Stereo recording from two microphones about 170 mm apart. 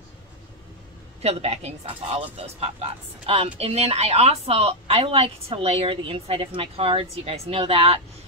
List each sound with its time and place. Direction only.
1.2 s a woman's voice: 40° right (ahead or behind)